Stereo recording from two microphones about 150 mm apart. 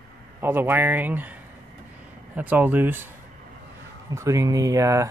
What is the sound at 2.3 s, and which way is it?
Speech, 10° right (ahead or behind).